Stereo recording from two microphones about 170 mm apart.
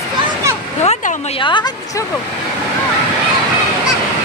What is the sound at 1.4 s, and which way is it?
Speech, 25° left (ahead or behind).